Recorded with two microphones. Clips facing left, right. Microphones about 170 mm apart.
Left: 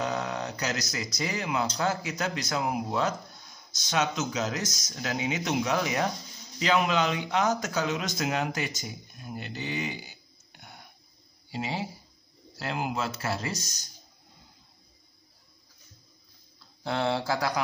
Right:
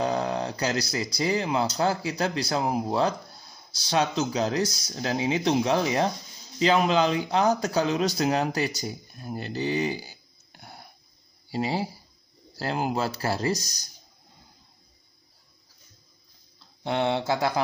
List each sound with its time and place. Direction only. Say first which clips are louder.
0.0 s speech: right 4 dB; 30° right (ahead or behind)
16.8 s speech: right 3 dB; 20° right (ahead or behind)